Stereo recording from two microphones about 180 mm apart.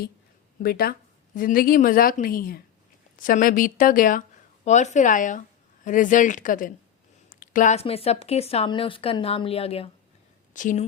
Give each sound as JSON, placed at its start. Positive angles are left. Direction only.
{"t": 0.6, "sound": "speech", "side_deg": 55}
{"t": 10.5, "sound": "speech", "side_deg": 45}